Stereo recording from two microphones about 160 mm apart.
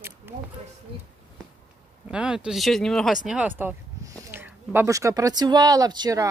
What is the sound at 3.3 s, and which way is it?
Speech, 10° right (ahead or behind).